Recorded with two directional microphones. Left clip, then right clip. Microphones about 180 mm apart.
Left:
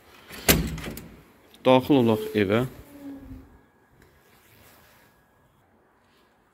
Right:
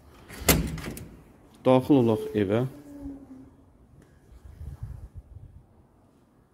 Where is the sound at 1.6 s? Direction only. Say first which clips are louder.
Left 2 dB; 25° right (ahead or behind).